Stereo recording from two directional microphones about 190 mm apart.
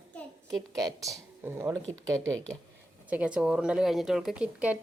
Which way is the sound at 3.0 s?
5° right (ahead or behind).